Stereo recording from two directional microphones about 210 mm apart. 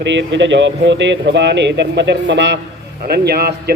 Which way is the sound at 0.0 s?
60° right (ahead or behind).